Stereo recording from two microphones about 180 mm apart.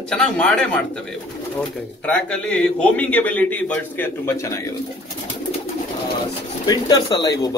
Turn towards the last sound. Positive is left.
turn(degrees=20)  # may be behind; listen again after turning